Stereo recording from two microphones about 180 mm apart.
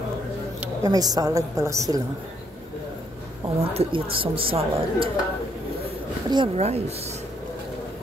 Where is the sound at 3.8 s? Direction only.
30° right (ahead or behind).